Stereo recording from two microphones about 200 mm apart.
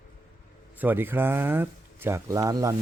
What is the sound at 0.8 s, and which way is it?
Speech, 10° right (ahead or behind).